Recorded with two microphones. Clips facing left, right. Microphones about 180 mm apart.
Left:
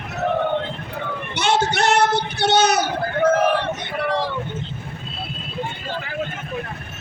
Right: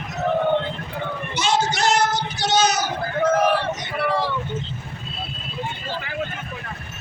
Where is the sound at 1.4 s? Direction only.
60° left (ahead or behind).